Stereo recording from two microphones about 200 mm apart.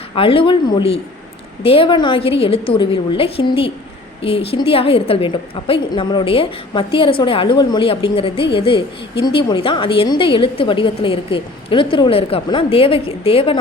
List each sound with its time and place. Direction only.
0.2 s a woman's voice: 25° left (ahead or behind)